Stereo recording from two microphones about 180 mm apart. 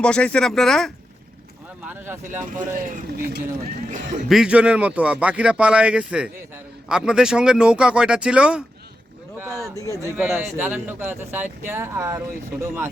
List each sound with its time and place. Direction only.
0.0 s speech: 5° left (ahead or behind)
1.9 s speech: 10° right (ahead or behind)
2.4 s a man's voice: 45° right (ahead or behind)
4.3 s speech: 5° right (ahead or behind)
9.4 s speech: 15° right (ahead or behind)
9.7 s speech: 15° left (ahead or behind)
10.0 s speech: 15° right (ahead or behind)